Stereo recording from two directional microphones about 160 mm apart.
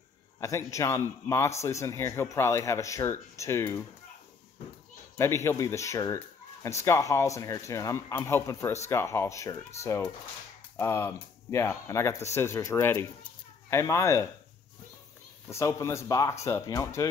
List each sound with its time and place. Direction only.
0.4 s speech: 20° left (ahead or behind)
5.1 s speech: 15° left (ahead or behind)
15.5 s speech: 20° left (ahead or behind)